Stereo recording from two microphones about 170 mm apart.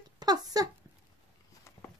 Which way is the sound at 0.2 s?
25° right (ahead or behind).